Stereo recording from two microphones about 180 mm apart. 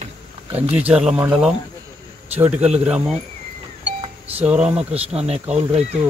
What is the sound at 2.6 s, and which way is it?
Speech, 40° right (ahead or behind).